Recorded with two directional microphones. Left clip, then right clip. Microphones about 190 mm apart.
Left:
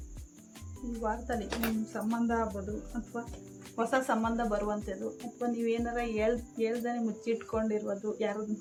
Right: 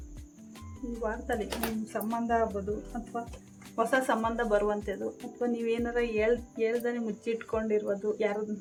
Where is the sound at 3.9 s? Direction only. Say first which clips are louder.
Right 1 dB; 45° right (ahead or behind).